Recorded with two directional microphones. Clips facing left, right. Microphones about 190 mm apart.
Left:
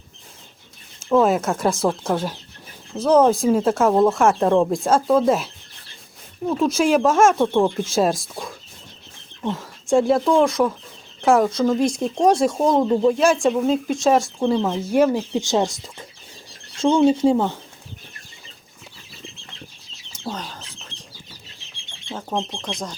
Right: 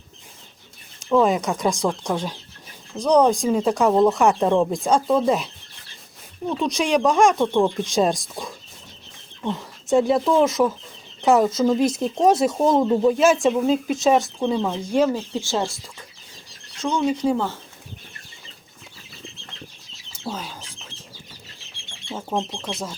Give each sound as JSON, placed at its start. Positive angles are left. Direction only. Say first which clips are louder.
{"t": 1.1, "sound": "speech", "louder": "left 1 dB", "side_deg": 5}
{"t": 6.5, "sound": "speech", "louder": "left 3 dB", "side_deg": 0}
{"t": 16.7, "sound": "speech", "louder": "left 6 dB", "side_deg": 30}
{"t": 17.3, "sound": "speech", "louder": "left 4 dB", "side_deg": 15}
{"t": 20.2, "sound": "bird", "louder": "left 1 dB", "side_deg": -5}
{"t": 22.1, "sound": "speech", "louder": "even", "side_deg": -10}